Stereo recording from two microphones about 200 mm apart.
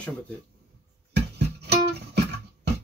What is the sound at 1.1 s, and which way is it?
Music, 55° right (ahead or behind).